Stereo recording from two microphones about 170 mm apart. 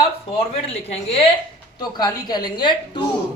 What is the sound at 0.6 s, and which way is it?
Speech, 35° left (ahead or behind).